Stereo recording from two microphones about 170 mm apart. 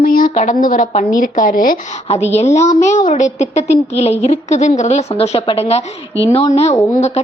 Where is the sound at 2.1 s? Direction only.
40° left (ahead or behind).